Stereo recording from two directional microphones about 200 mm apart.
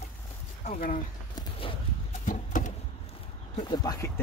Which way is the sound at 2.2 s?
40° left (ahead or behind).